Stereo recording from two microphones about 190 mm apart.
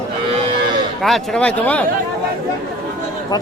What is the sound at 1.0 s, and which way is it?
Speech, centre (ahead or behind).